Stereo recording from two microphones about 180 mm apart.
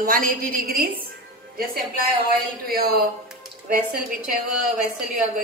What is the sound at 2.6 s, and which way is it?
Speech, 55° right (ahead or behind).